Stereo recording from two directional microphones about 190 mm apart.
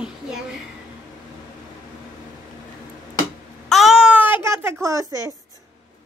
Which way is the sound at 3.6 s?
Centre (ahead or behind).